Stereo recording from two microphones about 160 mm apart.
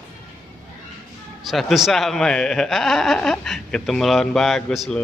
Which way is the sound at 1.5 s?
Centre (ahead or behind).